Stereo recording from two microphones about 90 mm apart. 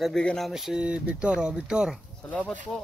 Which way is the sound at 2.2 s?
15° left (ahead or behind).